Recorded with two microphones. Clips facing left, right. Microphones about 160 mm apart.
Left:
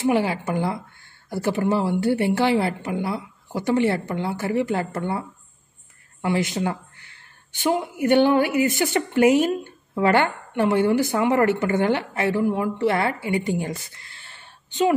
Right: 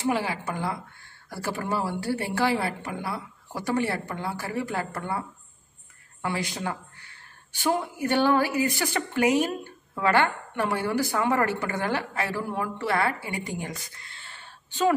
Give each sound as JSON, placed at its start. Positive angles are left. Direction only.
{"t": 0.0, "sound": "a woman's voice", "side_deg": 25}
{"t": 6.2, "sound": "a woman's voice", "side_deg": 25}
{"t": 14.7, "sound": "a woman's voice", "side_deg": 15}